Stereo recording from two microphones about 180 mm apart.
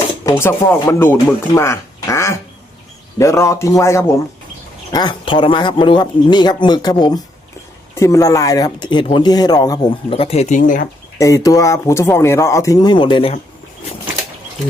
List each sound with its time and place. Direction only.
0.3 s a man's voice: 15° left (ahead or behind)
10.2 s speech: 35° left (ahead or behind)
11.2 s speech: 20° left (ahead or behind)